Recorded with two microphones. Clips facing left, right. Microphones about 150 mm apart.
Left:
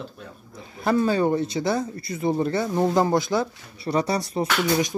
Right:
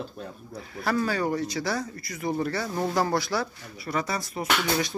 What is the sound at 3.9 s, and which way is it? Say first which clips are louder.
Speech: left 6 dB; 30° left (ahead or behind).